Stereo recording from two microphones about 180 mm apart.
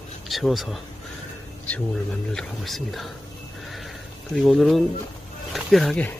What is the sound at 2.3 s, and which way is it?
Speech, centre (ahead or behind).